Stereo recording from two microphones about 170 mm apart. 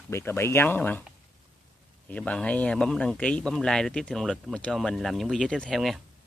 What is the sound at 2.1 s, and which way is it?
Speech, 5° left (ahead or behind).